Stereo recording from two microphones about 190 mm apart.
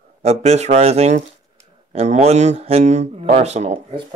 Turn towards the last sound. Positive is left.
turn(degrees=-30)  # may be behind; listen again after turning